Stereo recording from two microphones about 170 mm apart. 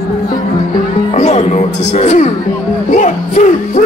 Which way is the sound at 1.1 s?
40° left (ahead or behind).